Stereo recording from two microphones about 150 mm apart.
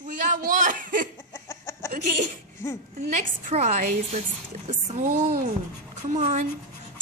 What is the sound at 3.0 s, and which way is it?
Speech, 60° right (ahead or behind).